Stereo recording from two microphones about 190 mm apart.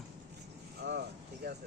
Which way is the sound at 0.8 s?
60° right (ahead or behind).